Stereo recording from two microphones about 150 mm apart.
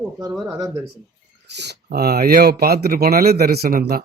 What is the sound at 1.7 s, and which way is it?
Speech, 90° right.